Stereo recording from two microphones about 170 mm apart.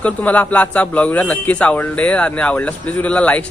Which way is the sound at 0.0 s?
10° left (ahead or behind).